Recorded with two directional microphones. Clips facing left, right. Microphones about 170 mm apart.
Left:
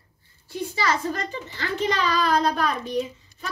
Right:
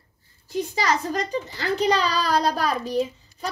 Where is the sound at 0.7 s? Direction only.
40° right (ahead or behind).